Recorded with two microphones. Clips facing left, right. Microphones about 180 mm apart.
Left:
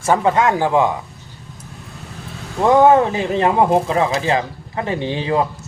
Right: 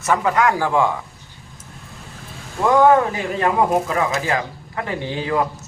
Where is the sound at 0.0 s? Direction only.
30° left (ahead or behind).